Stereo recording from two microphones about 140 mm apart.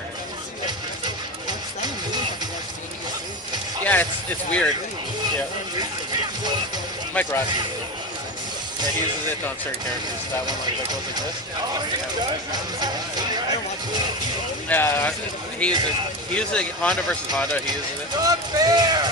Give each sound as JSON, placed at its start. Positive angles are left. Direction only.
{"t": 3.8, "sound": "speech", "side_deg": 10}
{"t": 7.2, "sound": "speech", "side_deg": 10}
{"t": 14.7, "sound": "speech", "side_deg": 15}
{"t": 18.2, "sound": "speech", "side_deg": -25}